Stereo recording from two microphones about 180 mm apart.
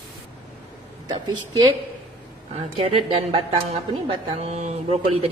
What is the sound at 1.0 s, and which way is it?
A woman's voice, 25° right (ahead or behind).